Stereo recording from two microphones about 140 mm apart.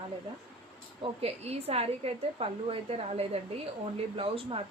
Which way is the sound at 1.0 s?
50° right (ahead or behind).